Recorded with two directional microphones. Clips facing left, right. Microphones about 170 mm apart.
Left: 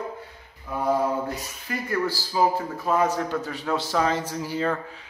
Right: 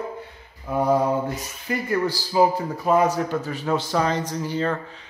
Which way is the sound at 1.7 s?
20° right (ahead or behind).